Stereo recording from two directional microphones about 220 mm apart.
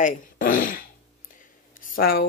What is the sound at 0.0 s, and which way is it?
Fart, 40° left (ahead or behind).